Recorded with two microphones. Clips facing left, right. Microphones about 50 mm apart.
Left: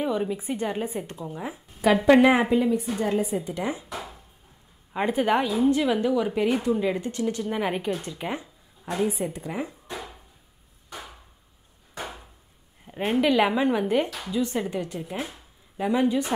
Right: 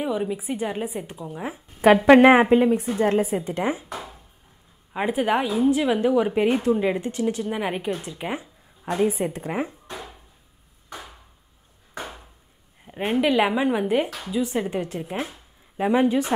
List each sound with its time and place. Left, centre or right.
0.0 s a woman's voice: centre
2.0 s a woman's voice: right
4.9 s a woman's voice: centre
9.1 s a woman's voice: right
9.9 s a sound: centre
12.8 s a woman's voice: centre